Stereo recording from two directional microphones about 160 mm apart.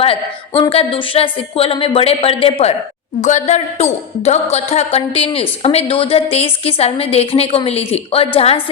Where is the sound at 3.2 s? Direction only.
45° left (ahead or behind).